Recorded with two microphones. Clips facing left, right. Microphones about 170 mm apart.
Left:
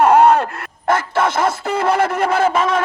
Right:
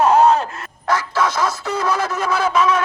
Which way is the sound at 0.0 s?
60° left (ahead or behind).